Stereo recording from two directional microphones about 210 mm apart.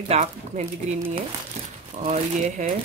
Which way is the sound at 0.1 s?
30° right (ahead or behind).